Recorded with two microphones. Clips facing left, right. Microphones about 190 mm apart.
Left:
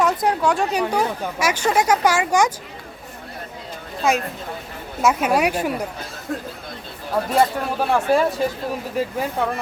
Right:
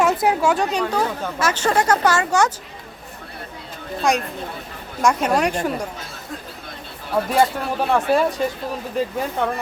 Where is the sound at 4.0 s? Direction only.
Centre (ahead or behind).